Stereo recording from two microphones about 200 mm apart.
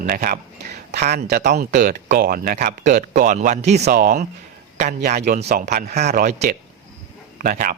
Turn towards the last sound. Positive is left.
turn(degrees=-45)  # may be behind; listen again after turning